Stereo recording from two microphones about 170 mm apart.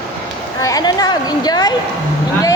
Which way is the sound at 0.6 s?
20° left (ahead or behind).